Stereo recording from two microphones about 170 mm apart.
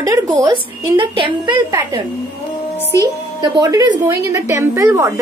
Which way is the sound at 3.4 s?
20° right (ahead or behind).